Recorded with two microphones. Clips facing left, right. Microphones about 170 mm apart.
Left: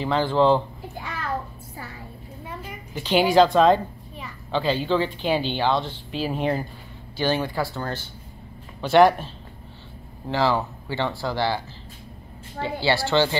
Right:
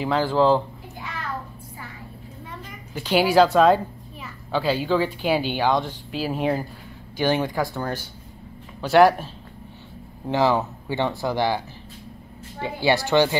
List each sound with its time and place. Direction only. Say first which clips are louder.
0.0 s a child's voice: even; 5° right (ahead or behind)
2.4 s a sound: left 4 dB; 10° left (ahead or behind)
3.0 s a child's voice: even; 10° right (ahead or behind)
7.2 s a child's voice: right 2 dB; 15° right (ahead or behind)
10.2 s a child's voice: right 2 dB; 20° right (ahead or behind)